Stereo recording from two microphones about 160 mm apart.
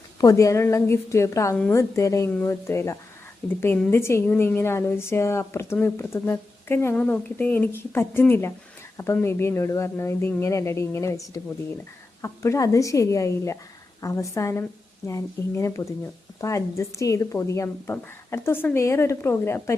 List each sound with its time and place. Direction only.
0.2 s a woman's voice: 20° left (ahead or behind)
12.2 s a woman's voice: 20° left (ahead or behind)